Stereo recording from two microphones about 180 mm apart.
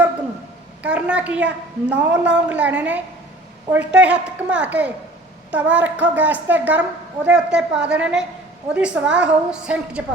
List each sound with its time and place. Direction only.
0.8 s a woman's voice: 5° right (ahead or behind)